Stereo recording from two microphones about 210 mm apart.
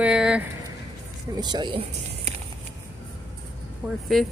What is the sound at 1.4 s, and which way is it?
Speech, 20° right (ahead or behind).